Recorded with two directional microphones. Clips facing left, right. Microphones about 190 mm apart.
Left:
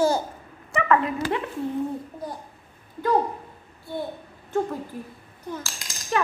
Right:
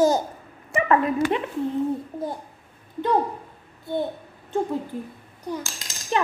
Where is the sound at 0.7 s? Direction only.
20° right (ahead or behind).